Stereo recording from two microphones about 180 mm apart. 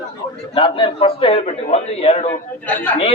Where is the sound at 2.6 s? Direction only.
10° left (ahead or behind).